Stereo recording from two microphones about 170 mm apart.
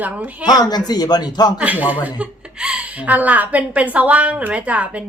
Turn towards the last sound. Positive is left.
turn(degrees=-10)  # may be behind; listen again after turning